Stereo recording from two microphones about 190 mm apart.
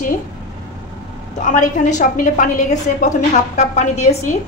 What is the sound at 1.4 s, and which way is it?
A woman's voice, 40° left (ahead or behind).